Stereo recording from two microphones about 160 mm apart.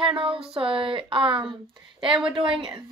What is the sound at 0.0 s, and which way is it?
Speech, 35° right (ahead or behind).